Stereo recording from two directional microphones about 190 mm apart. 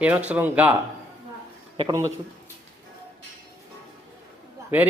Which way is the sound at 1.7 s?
20° right (ahead or behind).